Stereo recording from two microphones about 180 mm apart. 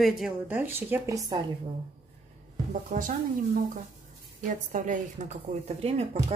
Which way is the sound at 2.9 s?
45° right (ahead or behind).